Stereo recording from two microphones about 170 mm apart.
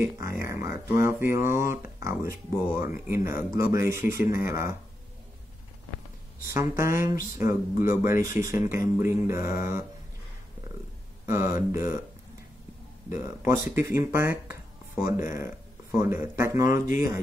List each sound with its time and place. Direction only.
0.3 s a sound: 15° right (ahead or behind)
1.0 s speech: 15° right (ahead or behind)
6.4 s speech: 15° right (ahead or behind)
8.2 s speech: 50° left (ahead or behind)
8.5 s speech: 15° right (ahead or behind)
11.2 s speech: 15° right (ahead or behind)
13.1 s speech: 15° right (ahead or behind)